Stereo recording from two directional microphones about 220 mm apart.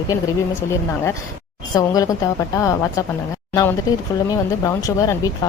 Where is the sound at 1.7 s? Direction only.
15° left (ahead or behind).